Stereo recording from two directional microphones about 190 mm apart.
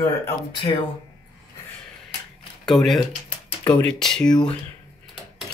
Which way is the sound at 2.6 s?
Centre (ahead or behind).